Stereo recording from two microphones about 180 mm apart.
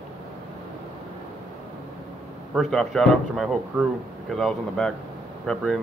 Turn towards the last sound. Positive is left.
turn(degrees=0)  # may be behind; listen again after turning